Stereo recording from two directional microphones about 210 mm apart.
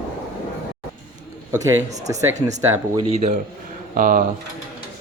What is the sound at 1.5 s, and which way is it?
Speech, 15° right (ahead or behind).